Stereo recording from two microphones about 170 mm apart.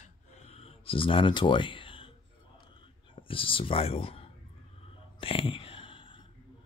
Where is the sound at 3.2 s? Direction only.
30° left (ahead or behind).